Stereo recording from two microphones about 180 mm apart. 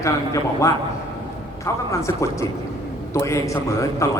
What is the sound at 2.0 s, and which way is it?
A man's voice, 15° left (ahead or behind).